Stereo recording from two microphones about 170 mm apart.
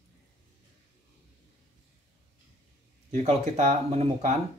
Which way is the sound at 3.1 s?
40° right (ahead or behind).